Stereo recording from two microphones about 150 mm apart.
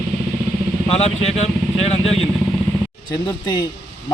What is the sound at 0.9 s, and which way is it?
Speech, 45° left (ahead or behind).